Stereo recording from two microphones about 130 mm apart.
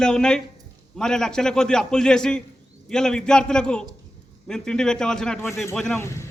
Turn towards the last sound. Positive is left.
turn(degrees=20)  # may be behind; listen again after turning